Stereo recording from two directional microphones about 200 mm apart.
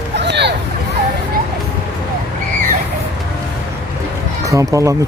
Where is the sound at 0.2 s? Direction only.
60° right (ahead or behind).